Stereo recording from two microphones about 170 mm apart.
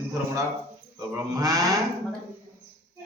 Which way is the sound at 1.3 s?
20° right (ahead or behind).